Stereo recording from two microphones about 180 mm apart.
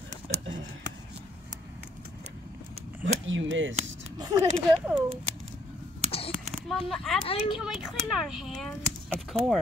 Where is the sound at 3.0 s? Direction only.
90° right.